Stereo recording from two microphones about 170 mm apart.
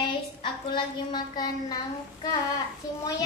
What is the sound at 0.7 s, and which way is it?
Speech, 25° left (ahead or behind).